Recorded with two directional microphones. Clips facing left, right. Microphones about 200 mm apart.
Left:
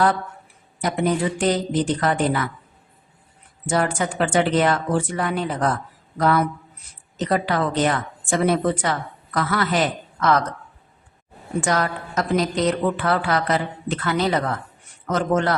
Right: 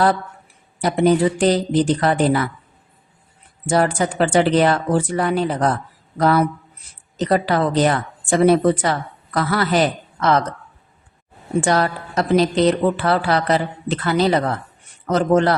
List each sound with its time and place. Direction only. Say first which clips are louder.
0.8 s a woman's voice: right 6 dB; 35° right (ahead or behind)
3.7 s a woman's voice: right 4 dB; 35° right (ahead or behind)
11.6 s a woman's voice: right 3 dB; 30° right (ahead or behind)